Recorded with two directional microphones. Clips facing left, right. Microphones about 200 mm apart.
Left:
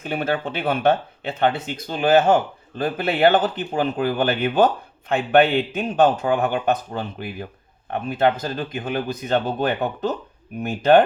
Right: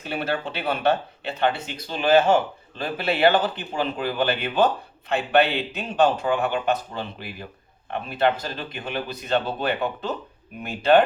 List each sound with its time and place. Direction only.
0.0 s speech: 50° left (ahead or behind)